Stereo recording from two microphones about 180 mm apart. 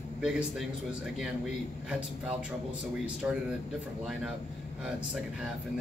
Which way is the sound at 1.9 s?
5° right (ahead or behind).